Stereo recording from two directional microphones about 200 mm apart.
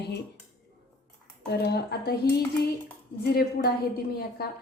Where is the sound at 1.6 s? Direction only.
55° left (ahead or behind).